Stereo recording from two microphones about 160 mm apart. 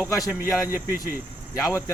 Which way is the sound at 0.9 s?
60° left (ahead or behind).